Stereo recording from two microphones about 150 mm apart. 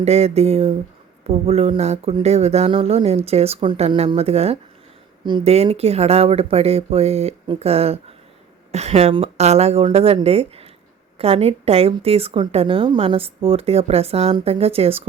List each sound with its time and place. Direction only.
0.0 s speech: 45° right (ahead or behind)
5.2 s a woman's voice: 30° right (ahead or behind)
5.5 s a woman's voice: 45° right (ahead or behind)